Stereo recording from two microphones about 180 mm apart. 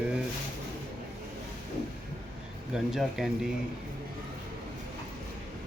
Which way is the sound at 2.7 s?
Centre (ahead or behind).